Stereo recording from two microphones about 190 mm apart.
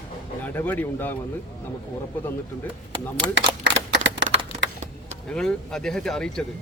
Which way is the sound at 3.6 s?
65° right (ahead or behind).